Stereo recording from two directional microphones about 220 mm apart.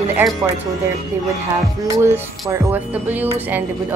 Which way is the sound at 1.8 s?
10° right (ahead or behind).